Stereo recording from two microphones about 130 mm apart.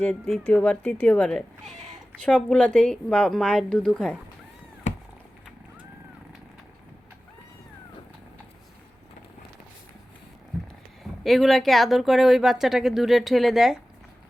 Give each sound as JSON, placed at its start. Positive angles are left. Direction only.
{"t": 0.0, "sound": "speech", "side_deg": 0}
{"t": 1.7, "sound": "a sound", "side_deg": -70}
{"t": 2.2, "sound": "speech", "side_deg": 10}
{"t": 4.9, "sound": "cat", "side_deg": 70}
{"t": 11.2, "sound": "speech", "side_deg": 0}